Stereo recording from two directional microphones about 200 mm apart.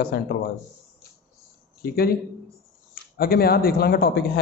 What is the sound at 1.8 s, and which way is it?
Speech, 50° left (ahead or behind).